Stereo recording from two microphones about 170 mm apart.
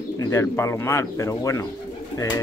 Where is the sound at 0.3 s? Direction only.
15° left (ahead or behind).